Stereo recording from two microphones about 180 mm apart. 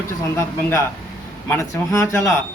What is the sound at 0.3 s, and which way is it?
A man's voice, 15° left (ahead or behind).